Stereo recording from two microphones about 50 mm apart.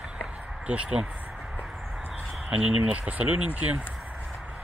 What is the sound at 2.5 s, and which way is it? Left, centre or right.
Speech, right.